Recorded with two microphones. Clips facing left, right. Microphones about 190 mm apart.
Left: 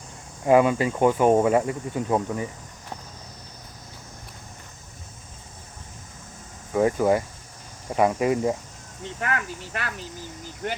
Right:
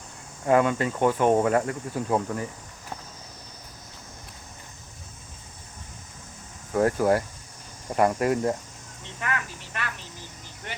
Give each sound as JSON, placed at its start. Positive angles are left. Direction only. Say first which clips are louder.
{"t": 0.4, "sound": "speech", "louder": "left 3 dB", "side_deg": 10}
{"t": 6.7, "sound": "speech", "louder": "left 1 dB", "side_deg": 0}
{"t": 9.2, "sound": "speech", "louder": "left 3 dB", "side_deg": 40}